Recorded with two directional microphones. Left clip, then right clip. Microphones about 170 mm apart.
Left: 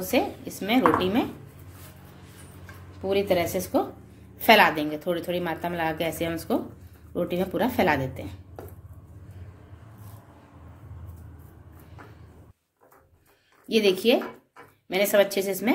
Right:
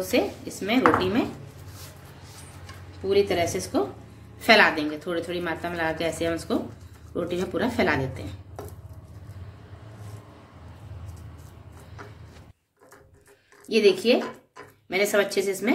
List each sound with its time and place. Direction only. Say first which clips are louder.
0.0 s a woman's voice: right 1 dB; 50° left (ahead or behind)
3.1 s a woman's voice: right 1 dB; 50° left (ahead or behind)
13.7 s a woman's voice: right 1 dB; 45° left (ahead or behind)